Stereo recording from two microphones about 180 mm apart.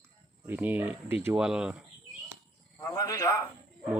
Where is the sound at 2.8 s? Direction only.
20° left (ahead or behind).